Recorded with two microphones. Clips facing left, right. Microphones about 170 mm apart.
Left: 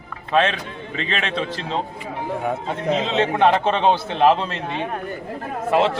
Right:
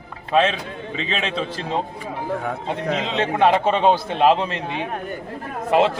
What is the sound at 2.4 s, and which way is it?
Speech, 20° left (ahead or behind).